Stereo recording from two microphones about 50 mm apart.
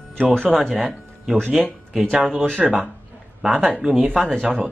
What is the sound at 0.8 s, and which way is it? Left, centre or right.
Music, centre.